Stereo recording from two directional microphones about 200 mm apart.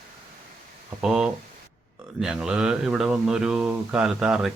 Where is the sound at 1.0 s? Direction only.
5° right (ahead or behind).